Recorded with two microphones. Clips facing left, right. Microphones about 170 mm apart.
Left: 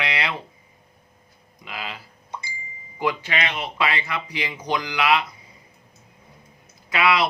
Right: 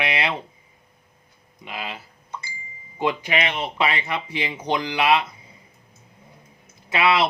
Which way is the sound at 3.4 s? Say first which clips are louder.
Right 2 dB; 25° right (ahead or behind).